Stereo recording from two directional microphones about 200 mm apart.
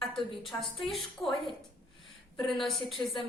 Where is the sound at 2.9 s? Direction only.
Centre (ahead or behind).